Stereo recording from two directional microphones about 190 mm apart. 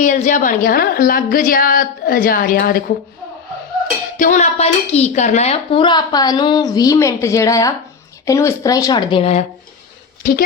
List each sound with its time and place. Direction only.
0.0 s a woman's voice: 40° left (ahead or behind)
4.2 s speech: 40° left (ahead or behind)